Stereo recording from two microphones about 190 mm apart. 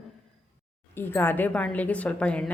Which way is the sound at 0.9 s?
10° left (ahead or behind).